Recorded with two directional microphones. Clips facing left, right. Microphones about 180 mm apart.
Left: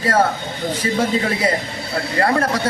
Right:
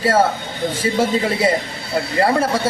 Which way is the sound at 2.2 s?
5° right (ahead or behind).